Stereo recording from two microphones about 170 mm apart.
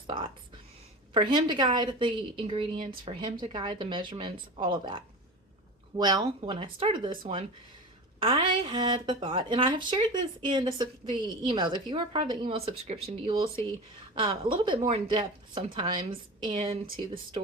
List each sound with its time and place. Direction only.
1.1 s speech: 30° right (ahead or behind)
8.2 s speech: 30° right (ahead or behind)